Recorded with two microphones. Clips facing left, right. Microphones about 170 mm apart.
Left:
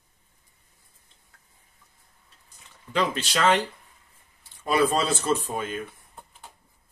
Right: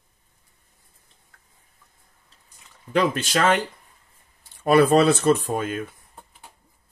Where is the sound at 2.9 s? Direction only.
50° right (ahead or behind).